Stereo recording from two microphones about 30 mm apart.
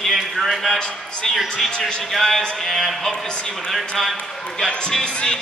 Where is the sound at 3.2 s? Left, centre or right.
Left.